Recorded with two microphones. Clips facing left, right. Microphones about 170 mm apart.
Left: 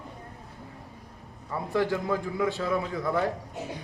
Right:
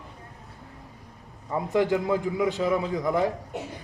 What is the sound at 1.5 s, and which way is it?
A man's voice, 15° right (ahead or behind).